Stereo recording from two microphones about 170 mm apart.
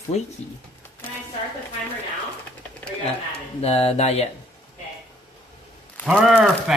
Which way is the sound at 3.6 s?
35° left (ahead or behind).